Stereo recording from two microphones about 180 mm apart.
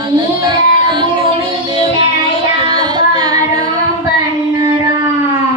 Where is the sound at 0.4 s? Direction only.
25° right (ahead or behind).